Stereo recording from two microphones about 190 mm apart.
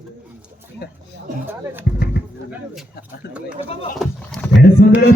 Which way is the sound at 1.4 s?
10° right (ahead or behind).